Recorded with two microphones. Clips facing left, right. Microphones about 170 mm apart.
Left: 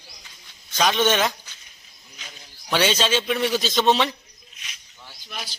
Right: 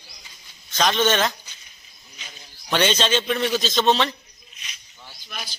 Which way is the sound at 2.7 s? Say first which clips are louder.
Even; 5° left (ahead or behind).